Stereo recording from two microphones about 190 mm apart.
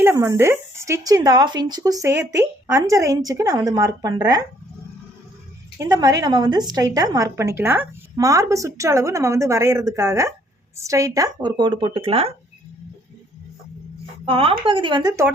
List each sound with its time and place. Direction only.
0.0 s a woman's voice: 15° right (ahead or behind)
5.7 s a woman's voice: 20° right (ahead or behind)
14.3 s speech: 30° right (ahead or behind)